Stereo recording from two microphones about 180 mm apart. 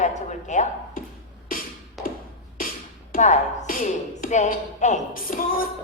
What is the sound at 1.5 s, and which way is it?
Music, 50° left (ahead or behind).